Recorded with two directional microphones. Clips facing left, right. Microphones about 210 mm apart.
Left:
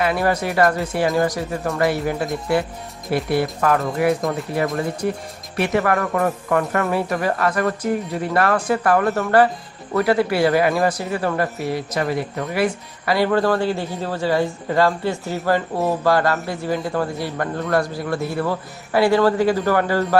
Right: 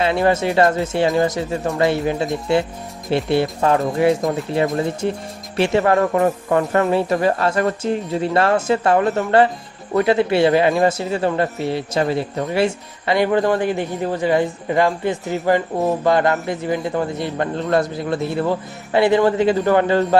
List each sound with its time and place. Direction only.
0.0 s speech: 25° right (ahead or behind)